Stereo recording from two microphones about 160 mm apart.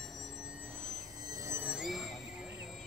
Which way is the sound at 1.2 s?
20° right (ahead or behind).